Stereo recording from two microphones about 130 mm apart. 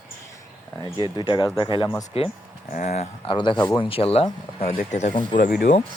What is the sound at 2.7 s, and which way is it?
Speech, 70° left (ahead or behind).